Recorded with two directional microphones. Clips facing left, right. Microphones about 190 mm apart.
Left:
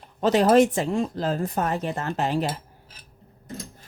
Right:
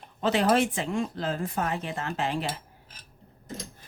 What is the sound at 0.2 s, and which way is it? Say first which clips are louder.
Speech: left 6 dB; 40° left (ahead or behind).